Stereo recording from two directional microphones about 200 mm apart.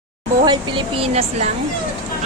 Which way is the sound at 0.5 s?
25° right (ahead or behind).